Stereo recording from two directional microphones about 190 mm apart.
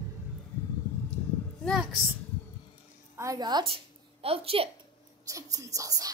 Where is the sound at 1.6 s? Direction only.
Centre (ahead or behind).